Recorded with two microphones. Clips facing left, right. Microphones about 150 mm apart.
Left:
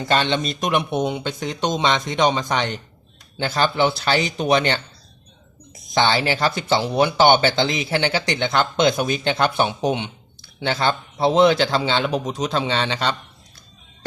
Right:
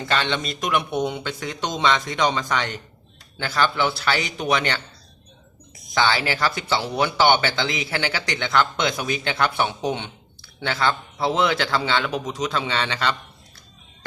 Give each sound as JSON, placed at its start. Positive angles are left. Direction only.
{"t": 0.0, "sound": "speech", "side_deg": 25}
{"t": 5.9, "sound": "speech", "side_deg": 25}